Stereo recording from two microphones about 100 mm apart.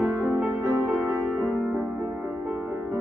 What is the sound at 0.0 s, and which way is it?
Music, 15° right (ahead or behind).